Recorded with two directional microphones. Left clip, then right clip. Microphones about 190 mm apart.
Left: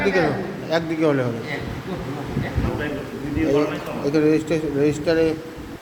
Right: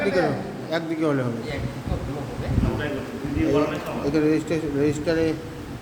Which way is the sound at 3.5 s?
Centre (ahead or behind).